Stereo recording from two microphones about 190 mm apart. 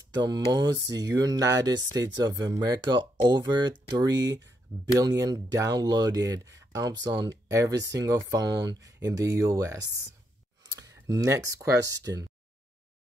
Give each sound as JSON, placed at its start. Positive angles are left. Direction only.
{"t": 0.1, "sound": "mantra", "side_deg": -20}
{"t": 0.7, "sound": "speech", "side_deg": -20}